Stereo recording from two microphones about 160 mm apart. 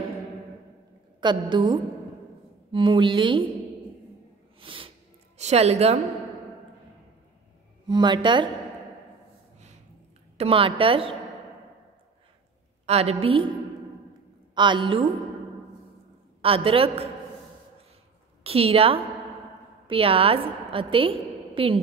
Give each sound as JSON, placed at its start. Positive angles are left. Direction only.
{"t": 1.5, "sound": "a woman's voice", "side_deg": -30}
{"t": 4.6, "sound": "snort", "side_deg": -35}
{"t": 5.4, "sound": "a woman's voice", "side_deg": -45}
{"t": 7.9, "sound": "a woman's voice", "side_deg": -30}
{"t": 10.3, "sound": "a woman's voice", "side_deg": -35}
{"t": 12.8, "sound": "a woman's voice", "side_deg": -40}
{"t": 14.5, "sound": "a woman's voice", "side_deg": -30}
{"t": 16.3, "sound": "a woman's voice", "side_deg": -35}
{"t": 18.4, "sound": "a woman's voice", "side_deg": -35}